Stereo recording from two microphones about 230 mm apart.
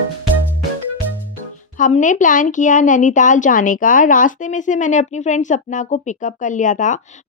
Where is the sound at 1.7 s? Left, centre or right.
Left.